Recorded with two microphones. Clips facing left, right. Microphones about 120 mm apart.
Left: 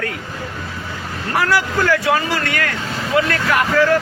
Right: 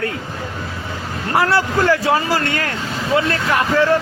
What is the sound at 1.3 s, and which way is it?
Speech, 25° right (ahead or behind).